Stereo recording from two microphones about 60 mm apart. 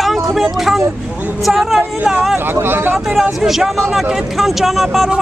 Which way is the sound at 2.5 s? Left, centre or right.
Right.